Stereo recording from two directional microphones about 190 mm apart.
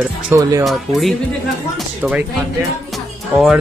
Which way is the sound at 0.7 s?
Centre (ahead or behind).